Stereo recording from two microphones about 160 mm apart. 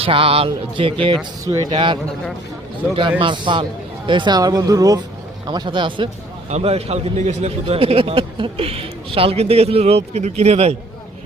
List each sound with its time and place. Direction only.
0.0 s a man's voice: 35° right (ahead or behind)
3.2 s a man's voice: 30° right (ahead or behind)